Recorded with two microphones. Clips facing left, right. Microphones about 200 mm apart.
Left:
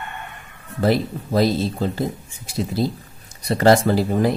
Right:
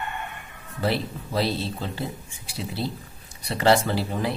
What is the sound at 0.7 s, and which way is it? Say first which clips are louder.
Speech: left 7 dB; 40° left (ahead or behind).